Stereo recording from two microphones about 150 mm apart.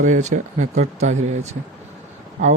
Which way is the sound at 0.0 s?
55° right (ahead or behind).